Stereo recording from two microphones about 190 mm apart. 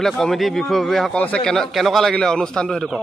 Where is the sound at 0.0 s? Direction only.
Centre (ahead or behind).